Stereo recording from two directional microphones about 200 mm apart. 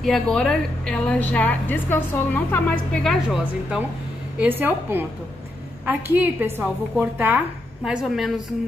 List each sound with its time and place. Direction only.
0.0 s a woman's voice: centre (ahead or behind)
6.1 s a woman's voice: 10° right (ahead or behind)